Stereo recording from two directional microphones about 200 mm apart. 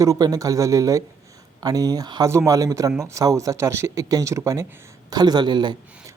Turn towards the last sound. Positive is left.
turn(degrees=-20)  # may be behind; listen again after turning